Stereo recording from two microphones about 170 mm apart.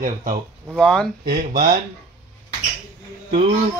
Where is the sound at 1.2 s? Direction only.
60° right (ahead or behind).